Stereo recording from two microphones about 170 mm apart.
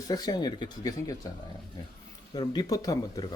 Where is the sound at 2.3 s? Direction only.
25° left (ahead or behind).